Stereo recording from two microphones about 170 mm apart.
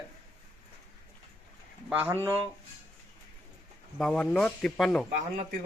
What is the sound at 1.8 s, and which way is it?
Speech, 10° right (ahead or behind).